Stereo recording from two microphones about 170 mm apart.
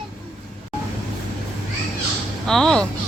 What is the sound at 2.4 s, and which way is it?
Speech, 5° left (ahead or behind).